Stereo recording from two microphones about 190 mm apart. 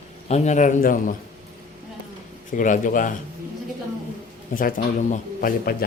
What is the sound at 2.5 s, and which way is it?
Speech, 45° left (ahead or behind).